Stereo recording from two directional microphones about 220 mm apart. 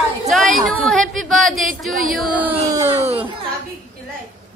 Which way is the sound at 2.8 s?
10° right (ahead or behind).